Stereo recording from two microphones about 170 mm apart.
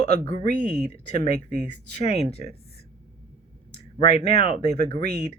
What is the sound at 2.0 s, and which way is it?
Speech, 35° left (ahead or behind).